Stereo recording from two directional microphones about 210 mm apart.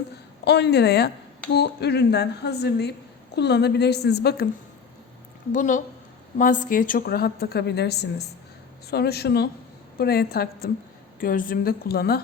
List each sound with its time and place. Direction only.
0.4 s a woman's voice: 55° left (ahead or behind)
5.5 s a woman's voice: 35° left (ahead or behind)